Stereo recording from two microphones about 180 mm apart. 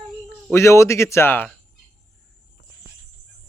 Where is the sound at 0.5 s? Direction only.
15° left (ahead or behind).